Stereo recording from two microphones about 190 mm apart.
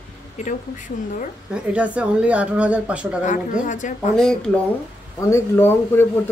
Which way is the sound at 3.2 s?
40° left (ahead or behind).